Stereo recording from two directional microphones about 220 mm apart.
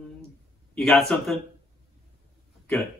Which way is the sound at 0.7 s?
Centre (ahead or behind).